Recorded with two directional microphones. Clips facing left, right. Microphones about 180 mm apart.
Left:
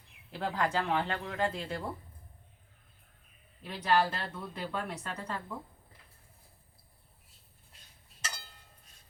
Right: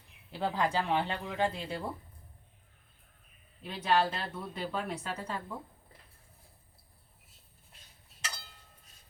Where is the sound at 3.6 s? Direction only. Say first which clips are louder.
Even; centre (ahead or behind).